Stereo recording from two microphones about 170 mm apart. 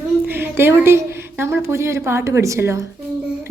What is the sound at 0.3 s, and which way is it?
A woman's voice, 10° right (ahead or behind).